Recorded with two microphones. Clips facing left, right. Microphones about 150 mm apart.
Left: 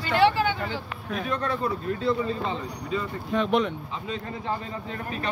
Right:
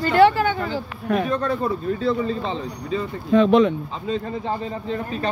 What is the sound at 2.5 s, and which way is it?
Speech, 30° right (ahead or behind).